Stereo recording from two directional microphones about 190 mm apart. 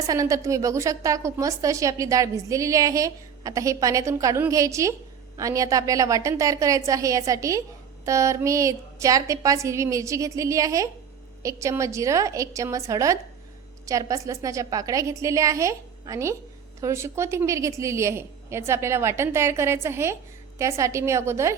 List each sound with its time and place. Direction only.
0.1 s a woman's voice: 15° right (ahead or behind)